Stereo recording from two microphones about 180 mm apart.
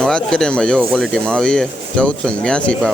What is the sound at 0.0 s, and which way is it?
Speech, 5° left (ahead or behind).